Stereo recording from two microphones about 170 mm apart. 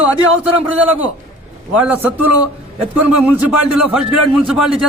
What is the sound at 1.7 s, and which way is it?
A man's voice, 10° right (ahead or behind).